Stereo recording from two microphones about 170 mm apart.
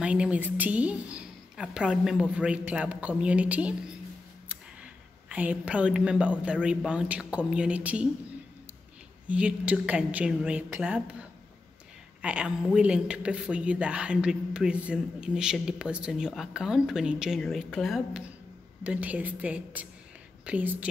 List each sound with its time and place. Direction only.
0.0 s a woman's voice: 5° right (ahead or behind)
5.3 s a woman's voice: 10° right (ahead or behind)
9.3 s a woman's voice: 5° right (ahead or behind)
12.2 s a woman's voice: 5° right (ahead or behind)